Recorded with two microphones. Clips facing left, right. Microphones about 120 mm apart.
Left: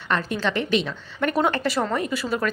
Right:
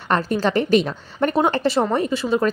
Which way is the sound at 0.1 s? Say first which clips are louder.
Right 5 dB; 40° right (ahead or behind).